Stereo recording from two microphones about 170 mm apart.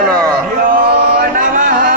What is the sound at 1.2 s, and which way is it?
Singing, 55° right (ahead or behind).